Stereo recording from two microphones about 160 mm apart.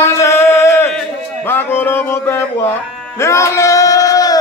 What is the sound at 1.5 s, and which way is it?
Music, 15° left (ahead or behind).